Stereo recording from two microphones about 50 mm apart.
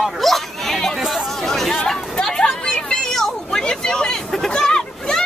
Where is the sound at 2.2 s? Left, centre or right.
Centre.